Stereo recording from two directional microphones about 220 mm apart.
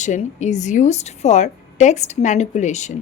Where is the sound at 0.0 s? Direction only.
30° left (ahead or behind).